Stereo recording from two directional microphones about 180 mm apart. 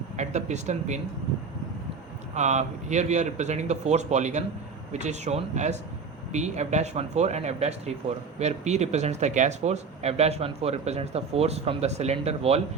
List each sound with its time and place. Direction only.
0.2 s speech: 40° right (ahead or behind)
2.3 s speech: 40° right (ahead or behind)